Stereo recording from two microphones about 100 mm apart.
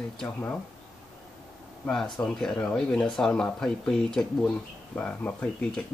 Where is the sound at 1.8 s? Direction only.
5° left (ahead or behind).